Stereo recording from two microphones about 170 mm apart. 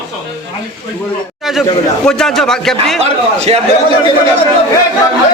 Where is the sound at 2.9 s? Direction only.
40° right (ahead or behind).